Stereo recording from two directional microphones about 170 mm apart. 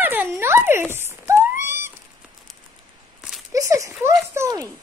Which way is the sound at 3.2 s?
5° right (ahead or behind).